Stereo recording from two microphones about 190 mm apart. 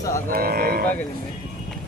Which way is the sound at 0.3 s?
55° right (ahead or behind).